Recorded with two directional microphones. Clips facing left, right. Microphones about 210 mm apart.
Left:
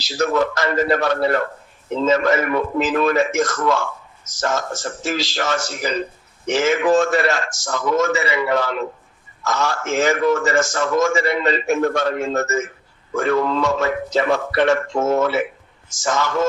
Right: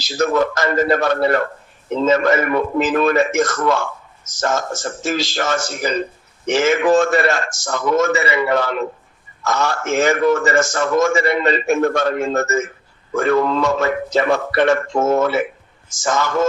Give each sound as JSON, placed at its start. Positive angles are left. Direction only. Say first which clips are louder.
{"t": 0.0, "sound": "a man's voice", "louder": "right 2 dB", "side_deg": -50}
{"t": 4.3, "sound": "speech", "louder": "right 2 dB", "side_deg": -45}
{"t": 6.5, "sound": "a man's voice", "louder": "right 2 dB", "side_deg": -75}